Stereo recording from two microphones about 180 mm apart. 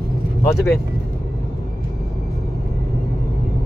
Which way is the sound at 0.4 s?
15° left (ahead or behind).